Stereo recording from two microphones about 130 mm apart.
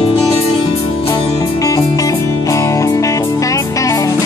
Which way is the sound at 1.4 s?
25° left (ahead or behind).